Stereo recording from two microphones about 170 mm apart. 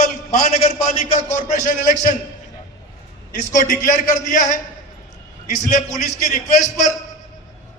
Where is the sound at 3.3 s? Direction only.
50° left (ahead or behind).